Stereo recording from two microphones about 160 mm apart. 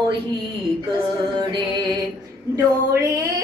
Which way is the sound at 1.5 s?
25° right (ahead or behind).